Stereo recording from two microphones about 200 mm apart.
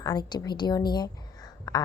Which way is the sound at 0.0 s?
20° left (ahead or behind).